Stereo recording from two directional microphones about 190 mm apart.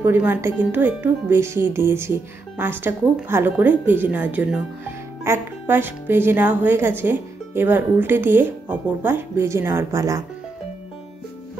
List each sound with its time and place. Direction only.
0.0 s speech: 10° right (ahead or behind)